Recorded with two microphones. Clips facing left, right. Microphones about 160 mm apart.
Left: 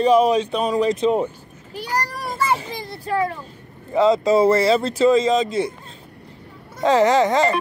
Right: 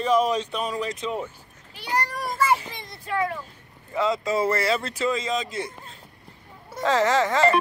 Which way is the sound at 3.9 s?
30° left (ahead or behind).